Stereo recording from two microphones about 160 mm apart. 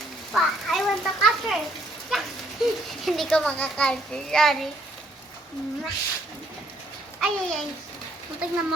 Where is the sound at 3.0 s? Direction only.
Centre (ahead or behind).